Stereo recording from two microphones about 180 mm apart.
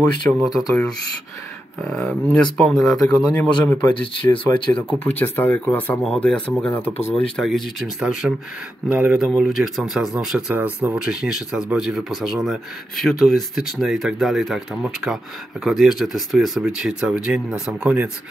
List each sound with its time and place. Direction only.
0.5 s speech: centre (ahead or behind)
3.9 s speech: 30° left (ahead or behind)
4.9 s speech: 10° left (ahead or behind); by 18.1 s 5° right (ahead or behind)